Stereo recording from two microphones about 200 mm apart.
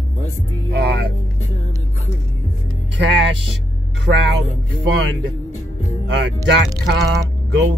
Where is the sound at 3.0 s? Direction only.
60° right (ahead or behind).